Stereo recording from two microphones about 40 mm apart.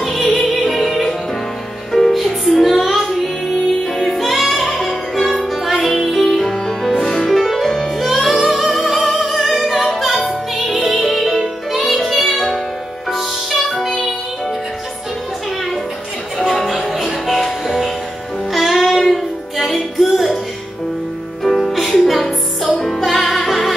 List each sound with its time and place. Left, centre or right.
0.0 s music: centre
4.7 s music: centre
7.3 s music: centre
16.3 s music: centre
21.4 s music: centre